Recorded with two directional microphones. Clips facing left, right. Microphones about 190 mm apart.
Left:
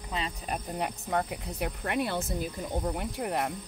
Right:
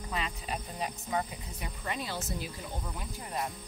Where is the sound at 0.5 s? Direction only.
60° left (ahead or behind).